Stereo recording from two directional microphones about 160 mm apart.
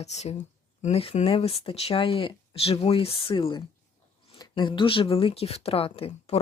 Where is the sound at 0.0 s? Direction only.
45° left (ahead or behind).